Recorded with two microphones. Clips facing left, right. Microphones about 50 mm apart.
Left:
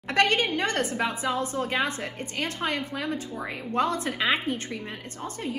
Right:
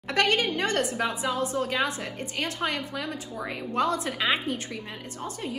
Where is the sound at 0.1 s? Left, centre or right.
Left.